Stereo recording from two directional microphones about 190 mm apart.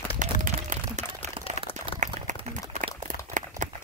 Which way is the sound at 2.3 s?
40° right (ahead or behind).